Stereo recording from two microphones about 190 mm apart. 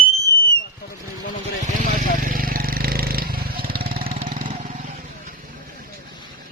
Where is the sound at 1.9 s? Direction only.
45° right (ahead or behind).